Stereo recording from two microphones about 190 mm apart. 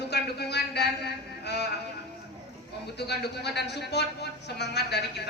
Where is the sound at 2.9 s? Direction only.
60° left (ahead or behind).